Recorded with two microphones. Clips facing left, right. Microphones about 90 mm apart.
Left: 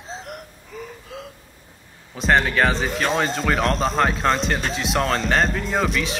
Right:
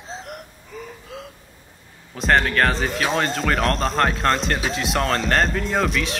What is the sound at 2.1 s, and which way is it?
Speech, centre (ahead or behind).